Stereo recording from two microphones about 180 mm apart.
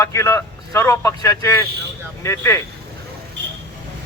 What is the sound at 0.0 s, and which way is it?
Speech, 15° left (ahead or behind).